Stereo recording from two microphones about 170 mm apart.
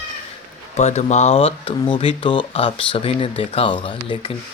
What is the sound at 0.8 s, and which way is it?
Speech, 40° left (ahead or behind).